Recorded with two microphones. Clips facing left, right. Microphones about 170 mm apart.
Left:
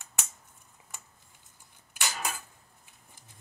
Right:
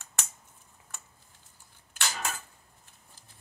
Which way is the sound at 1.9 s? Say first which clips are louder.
Even; 15° left (ahead or behind).